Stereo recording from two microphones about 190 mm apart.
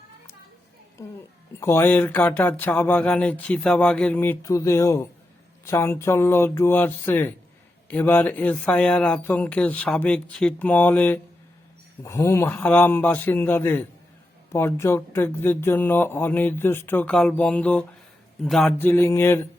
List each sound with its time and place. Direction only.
1.0 s a child's voice: 15° left (ahead or behind)